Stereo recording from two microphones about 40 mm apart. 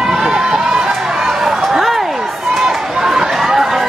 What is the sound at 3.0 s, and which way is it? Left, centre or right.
Chatter, centre.